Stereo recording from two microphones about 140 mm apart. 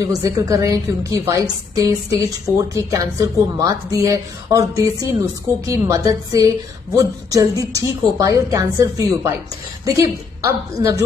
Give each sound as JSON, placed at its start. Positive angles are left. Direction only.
{"t": 0.0, "sound": "a woman's voice", "side_deg": -25}